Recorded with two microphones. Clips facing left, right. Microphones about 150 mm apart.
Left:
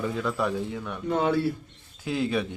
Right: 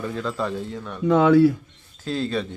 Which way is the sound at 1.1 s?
90° right.